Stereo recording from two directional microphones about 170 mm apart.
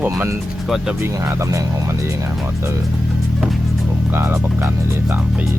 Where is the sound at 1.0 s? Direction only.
15° right (ahead or behind).